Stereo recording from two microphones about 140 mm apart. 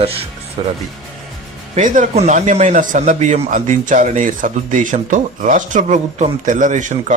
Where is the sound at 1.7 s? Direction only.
65° right (ahead or behind).